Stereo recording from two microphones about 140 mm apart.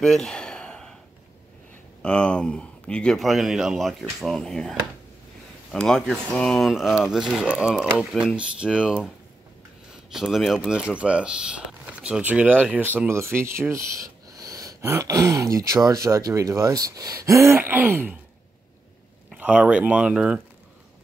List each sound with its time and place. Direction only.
0.0 s gasp: 5° left (ahead or behind)
2.0 s a man's voice: 5° left (ahead or behind)
10.1 s speech: centre (ahead or behind)
19.3 s speech: 10° right (ahead or behind)